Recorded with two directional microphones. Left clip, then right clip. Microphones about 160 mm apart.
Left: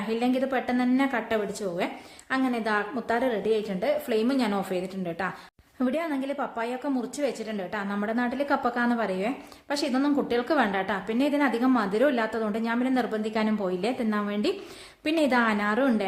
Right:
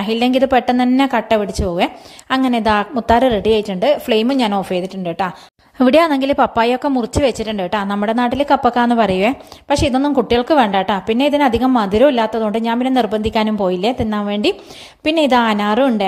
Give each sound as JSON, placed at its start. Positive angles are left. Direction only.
{"t": 0.1, "sound": "speech", "side_deg": -55}
{"t": 5.8, "sound": "a woman's voice", "side_deg": -65}